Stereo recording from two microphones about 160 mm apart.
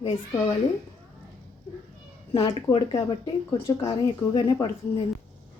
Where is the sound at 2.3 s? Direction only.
35° left (ahead or behind).